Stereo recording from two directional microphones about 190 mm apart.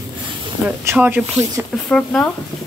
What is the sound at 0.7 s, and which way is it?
Speech, 5° right (ahead or behind).